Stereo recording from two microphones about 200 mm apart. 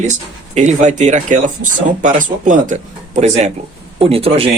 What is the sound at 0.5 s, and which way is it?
Speech, 35° right (ahead or behind).